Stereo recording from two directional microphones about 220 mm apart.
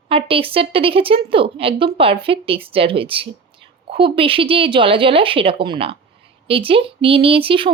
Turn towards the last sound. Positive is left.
turn(degrees=-25)  # may be behind; listen again after turning